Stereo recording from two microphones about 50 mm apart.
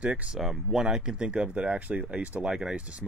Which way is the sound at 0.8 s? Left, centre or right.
Centre.